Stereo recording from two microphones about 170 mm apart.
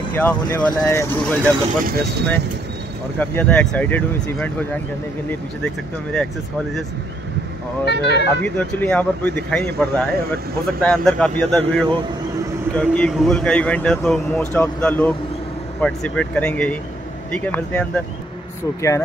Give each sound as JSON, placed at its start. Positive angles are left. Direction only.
{"t": 0.1, "sound": "a man's voice", "side_deg": 10}
{"t": 1.9, "sound": "speech", "side_deg": -65}
{"t": 3.2, "sound": "a man's voice", "side_deg": 10}
{"t": 7.8, "sound": "speech", "side_deg": 90}
{"t": 8.4, "sound": "a man's voice", "side_deg": 10}